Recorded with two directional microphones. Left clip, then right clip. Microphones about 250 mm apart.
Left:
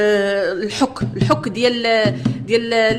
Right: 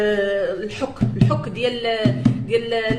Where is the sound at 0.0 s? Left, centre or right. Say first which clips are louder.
Left 3 dB; left.